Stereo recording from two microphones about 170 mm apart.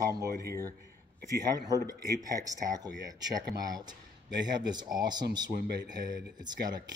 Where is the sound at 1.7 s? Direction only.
20° right (ahead or behind).